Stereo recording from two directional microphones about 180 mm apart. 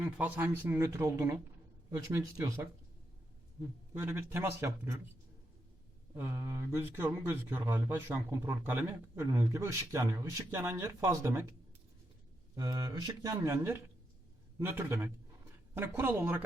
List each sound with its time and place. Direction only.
0.0 s speech: 10° right (ahead or behind)
3.9 s speech: 10° right (ahead or behind)
6.1 s speech: 10° right (ahead or behind)
12.5 s speech: 20° right (ahead or behind)